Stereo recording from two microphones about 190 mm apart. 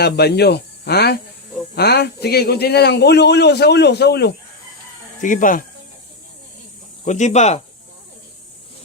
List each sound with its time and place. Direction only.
0.0 s a man's voice: 60° left (ahead or behind)
5.2 s speech: 45° left (ahead or behind)
7.0 s speech: 40° left (ahead or behind)